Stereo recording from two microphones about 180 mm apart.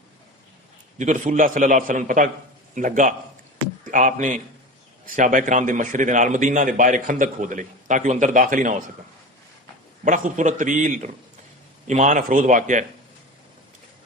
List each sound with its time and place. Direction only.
0.9 s a man's voice: 40° right (ahead or behind)
10.0 s a man's voice: 45° right (ahead or behind)